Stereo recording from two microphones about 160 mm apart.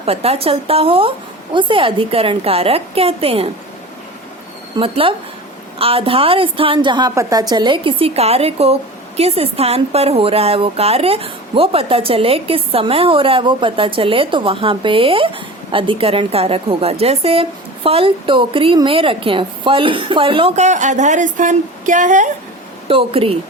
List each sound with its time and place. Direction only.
0.0 s a woman's voice: 40° right (ahead or behind)
4.8 s a woman's voice: 35° right (ahead or behind)
20.7 s speech: 50° right (ahead or behind)
22.9 s a woman's voice: 35° right (ahead or behind)